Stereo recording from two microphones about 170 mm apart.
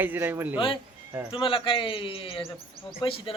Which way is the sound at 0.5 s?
30° left (ahead or behind).